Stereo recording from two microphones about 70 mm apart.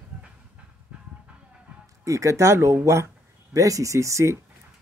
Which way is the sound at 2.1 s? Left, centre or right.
Right.